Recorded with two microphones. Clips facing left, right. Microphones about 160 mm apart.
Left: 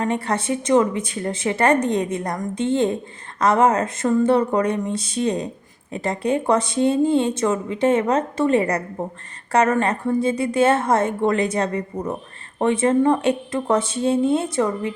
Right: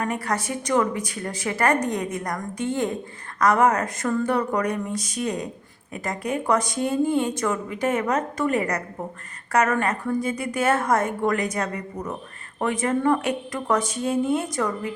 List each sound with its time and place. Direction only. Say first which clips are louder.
0.0 s speech: left 4 dB; 25° left (ahead or behind)